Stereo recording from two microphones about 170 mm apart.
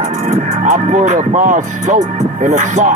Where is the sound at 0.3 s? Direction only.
45° right (ahead or behind).